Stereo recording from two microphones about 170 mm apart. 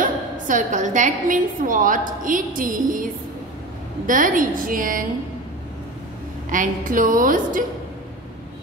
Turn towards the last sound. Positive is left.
turn(degrees=-50)  # may be behind; listen again after turning